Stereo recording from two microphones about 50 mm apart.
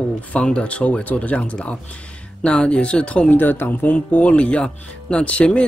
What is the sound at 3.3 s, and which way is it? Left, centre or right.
Speech, left.